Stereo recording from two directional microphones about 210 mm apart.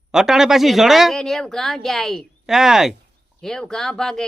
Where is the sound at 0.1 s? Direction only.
Centre (ahead or behind).